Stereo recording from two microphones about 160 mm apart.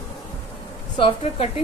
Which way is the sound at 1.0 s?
35° left (ahead or behind).